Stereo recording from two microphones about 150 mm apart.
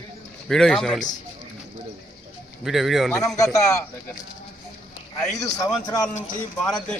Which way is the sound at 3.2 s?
20° left (ahead or behind).